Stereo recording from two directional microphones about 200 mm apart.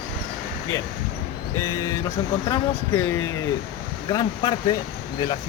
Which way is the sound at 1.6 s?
15° left (ahead or behind).